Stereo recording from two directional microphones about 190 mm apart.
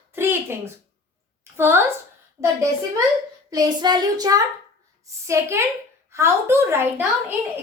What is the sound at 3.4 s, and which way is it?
A woman's voice, 20° right (ahead or behind).